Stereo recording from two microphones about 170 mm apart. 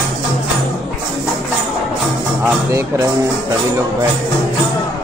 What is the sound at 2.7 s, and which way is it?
Speech, 15° right (ahead or behind).